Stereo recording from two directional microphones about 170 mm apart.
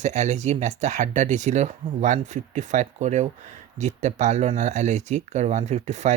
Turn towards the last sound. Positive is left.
turn(degrees=-40)  # may be behind; listen again after turning